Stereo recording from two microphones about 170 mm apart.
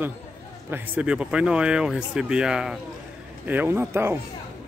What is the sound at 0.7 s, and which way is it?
Speech, 10° right (ahead or behind).